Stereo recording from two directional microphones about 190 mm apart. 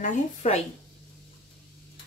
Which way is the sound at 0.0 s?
35° left (ahead or behind).